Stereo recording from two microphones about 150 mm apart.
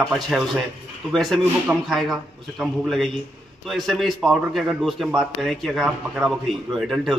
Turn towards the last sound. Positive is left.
turn(degrees=0)  # may be behind; listen again after turning